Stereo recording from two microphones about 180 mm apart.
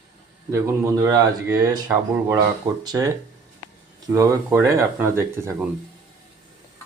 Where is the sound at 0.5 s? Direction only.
15° right (ahead or behind).